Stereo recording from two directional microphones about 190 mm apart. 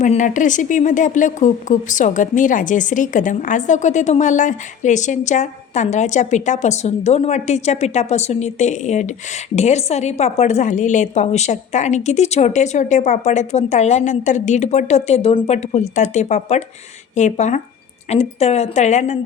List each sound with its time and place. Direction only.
0.0 s speech: 40° left (ahead or behind)